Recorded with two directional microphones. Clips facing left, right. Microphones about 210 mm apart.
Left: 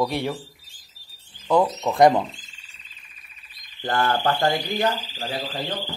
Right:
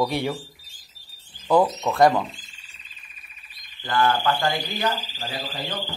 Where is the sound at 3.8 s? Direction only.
45° left (ahead or behind).